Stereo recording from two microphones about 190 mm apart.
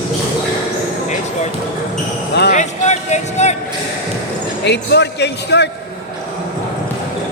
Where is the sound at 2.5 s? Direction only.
40° left (ahead or behind).